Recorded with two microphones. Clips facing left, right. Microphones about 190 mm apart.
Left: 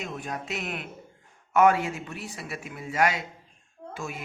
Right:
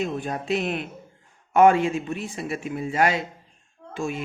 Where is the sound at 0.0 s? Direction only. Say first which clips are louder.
Right 7 dB; 30° right (ahead or behind).